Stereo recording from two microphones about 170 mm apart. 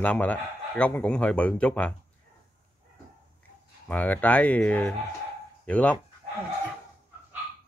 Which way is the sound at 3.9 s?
10° left (ahead or behind).